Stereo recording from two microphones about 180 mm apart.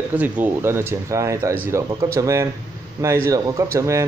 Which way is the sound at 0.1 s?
10° right (ahead or behind).